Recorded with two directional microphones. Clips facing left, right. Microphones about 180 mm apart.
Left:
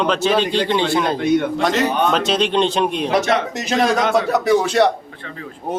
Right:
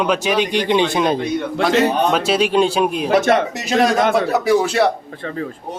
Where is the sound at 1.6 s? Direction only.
5° right (ahead or behind).